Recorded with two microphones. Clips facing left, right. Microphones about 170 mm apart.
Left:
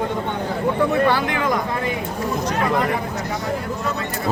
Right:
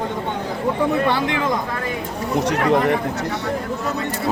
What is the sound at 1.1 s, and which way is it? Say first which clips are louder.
Speech: even; 25° right (ahead or behind).